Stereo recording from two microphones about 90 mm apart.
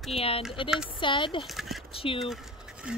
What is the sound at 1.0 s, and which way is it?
Speech, 65° left (ahead or behind).